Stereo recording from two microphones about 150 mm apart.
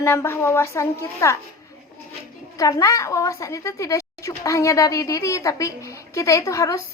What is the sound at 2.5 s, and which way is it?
A woman's voice, 20° left (ahead or behind).